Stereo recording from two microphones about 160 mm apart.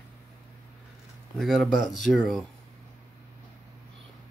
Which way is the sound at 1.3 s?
Centre (ahead or behind).